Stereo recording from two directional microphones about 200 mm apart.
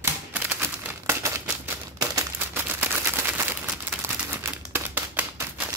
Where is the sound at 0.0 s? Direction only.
10° right (ahead or behind).